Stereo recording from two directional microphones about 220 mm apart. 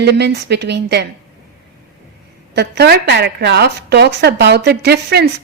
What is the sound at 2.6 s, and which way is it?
A woman's voice, 50° right (ahead or behind).